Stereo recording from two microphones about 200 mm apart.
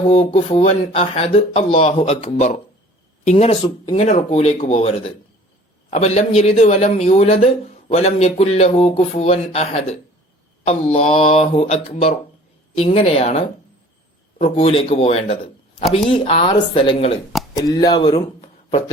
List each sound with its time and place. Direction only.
0.1 s a man's voice: 35° left (ahead or behind)